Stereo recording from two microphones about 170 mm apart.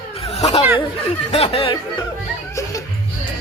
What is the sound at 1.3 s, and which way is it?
Speech, 35° left (ahead or behind).